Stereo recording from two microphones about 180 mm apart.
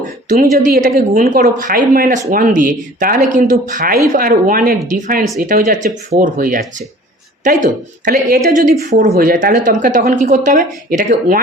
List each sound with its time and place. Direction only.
0.7 s speech: 55° right (ahead or behind)
8.9 s speech: 40° right (ahead or behind)
9.1 s speech: 50° right (ahead or behind)